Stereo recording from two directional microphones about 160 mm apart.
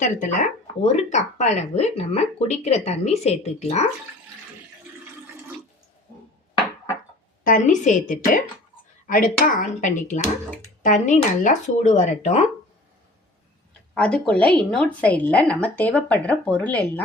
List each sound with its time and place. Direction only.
0.0 s speech: 55° left (ahead or behind)
7.4 s speech: 55° left (ahead or behind)
13.9 s speech: 5° left (ahead or behind)